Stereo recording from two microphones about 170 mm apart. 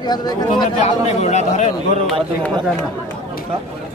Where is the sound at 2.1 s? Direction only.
Centre (ahead or behind).